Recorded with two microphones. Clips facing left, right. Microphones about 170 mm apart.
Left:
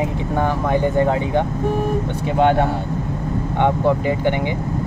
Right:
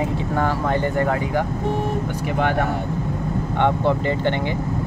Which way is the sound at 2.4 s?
25° left (ahead or behind).